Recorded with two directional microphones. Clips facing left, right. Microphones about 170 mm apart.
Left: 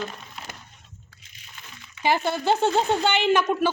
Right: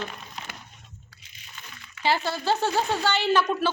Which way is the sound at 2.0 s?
20° left (ahead or behind).